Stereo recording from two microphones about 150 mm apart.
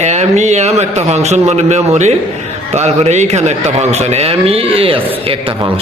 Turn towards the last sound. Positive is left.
turn(degrees=-40)  # may be behind; listen again after turning